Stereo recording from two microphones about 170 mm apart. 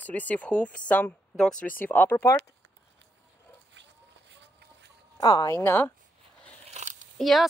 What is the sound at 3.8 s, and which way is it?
Chicken, 90° right.